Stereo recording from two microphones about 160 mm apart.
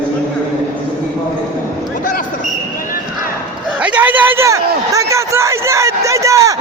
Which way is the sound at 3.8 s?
10° right (ahead or behind).